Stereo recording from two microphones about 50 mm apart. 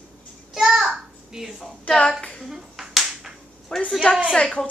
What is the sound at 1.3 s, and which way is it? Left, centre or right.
Speech, centre.